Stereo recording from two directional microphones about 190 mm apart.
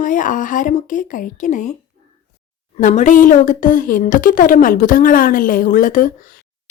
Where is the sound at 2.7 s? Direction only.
40° left (ahead or behind).